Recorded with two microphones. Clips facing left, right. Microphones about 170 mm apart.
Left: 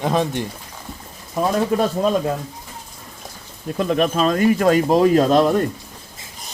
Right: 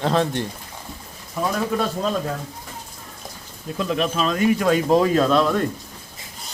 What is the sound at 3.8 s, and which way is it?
Speech, 45° left (ahead or behind).